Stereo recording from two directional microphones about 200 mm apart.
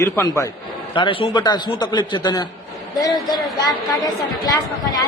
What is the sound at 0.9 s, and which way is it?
A man's voice, 25° left (ahead or behind).